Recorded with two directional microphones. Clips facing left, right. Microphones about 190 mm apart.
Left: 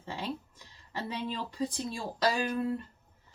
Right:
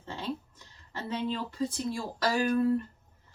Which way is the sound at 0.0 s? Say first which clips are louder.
Right 1 dB; 10° left (ahead or behind).